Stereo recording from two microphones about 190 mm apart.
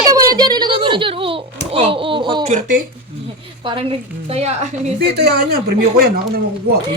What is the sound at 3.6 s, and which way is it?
A woman's voice, 30° right (ahead or behind).